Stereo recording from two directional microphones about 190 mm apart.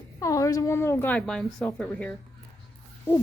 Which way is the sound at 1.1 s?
5° left (ahead or behind).